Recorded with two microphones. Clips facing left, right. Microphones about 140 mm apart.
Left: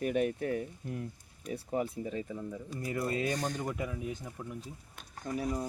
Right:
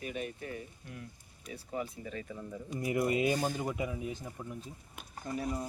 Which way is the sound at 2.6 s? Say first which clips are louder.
Right 5 dB; 15° right (ahead or behind).